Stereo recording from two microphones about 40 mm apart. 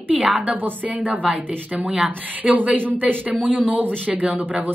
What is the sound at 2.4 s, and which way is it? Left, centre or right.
Speech, right.